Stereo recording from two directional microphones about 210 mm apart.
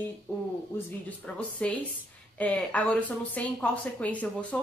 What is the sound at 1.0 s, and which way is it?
A woman's voice, 5° left (ahead or behind).